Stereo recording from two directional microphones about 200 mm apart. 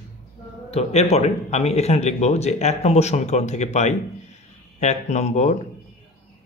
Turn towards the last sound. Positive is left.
turn(degrees=35)  # may be behind; listen again after turning